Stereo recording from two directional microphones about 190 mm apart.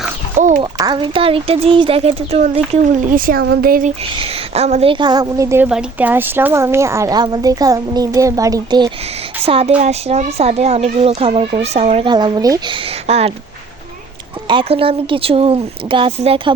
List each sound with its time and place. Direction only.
0.3 s a sound: 40° right (ahead or behind)
0.6 s speech: 25° right (ahead or behind); by 3.9 s 50° right (ahead or behind)
4.2 s a woman's voice: 30° right (ahead or behind)
9.5 s speech: 30° right (ahead or behind)
14.4 s speech: 30° right (ahead or behind)